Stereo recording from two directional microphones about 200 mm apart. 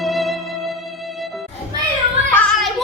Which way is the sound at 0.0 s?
Centre (ahead or behind).